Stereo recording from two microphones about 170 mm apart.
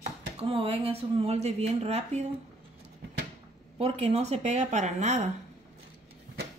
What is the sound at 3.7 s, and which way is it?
A woman's voice, 40° right (ahead or behind).